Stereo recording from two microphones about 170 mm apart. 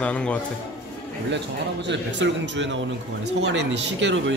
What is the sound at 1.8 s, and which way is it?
A man's voice, 90° right.